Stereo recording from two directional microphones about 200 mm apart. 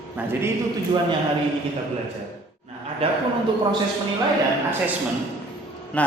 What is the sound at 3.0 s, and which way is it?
Speech, 30° right (ahead or behind).